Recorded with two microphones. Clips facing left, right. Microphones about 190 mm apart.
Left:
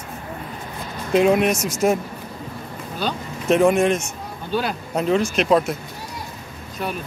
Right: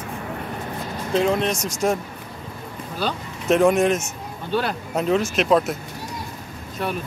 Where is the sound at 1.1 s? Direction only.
15° left (ahead or behind).